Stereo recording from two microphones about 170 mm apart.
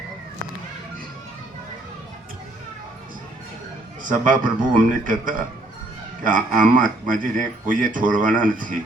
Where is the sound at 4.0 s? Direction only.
50° right (ahead or behind).